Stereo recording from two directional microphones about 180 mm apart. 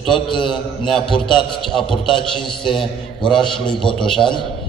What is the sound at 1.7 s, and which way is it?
Speech, centre (ahead or behind).